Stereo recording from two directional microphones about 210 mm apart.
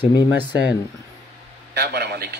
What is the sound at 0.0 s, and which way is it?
Speech, 20° left (ahead or behind).